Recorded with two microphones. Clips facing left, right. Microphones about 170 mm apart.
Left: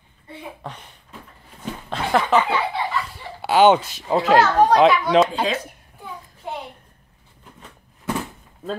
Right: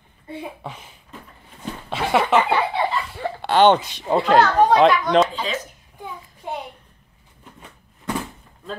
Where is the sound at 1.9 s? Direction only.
Centre (ahead or behind).